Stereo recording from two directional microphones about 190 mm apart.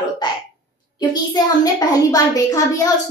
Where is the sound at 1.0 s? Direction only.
20° left (ahead or behind).